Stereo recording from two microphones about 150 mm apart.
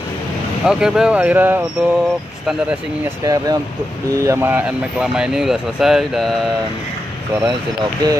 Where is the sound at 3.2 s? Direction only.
25° right (ahead or behind); by 6.5 s centre (ahead or behind).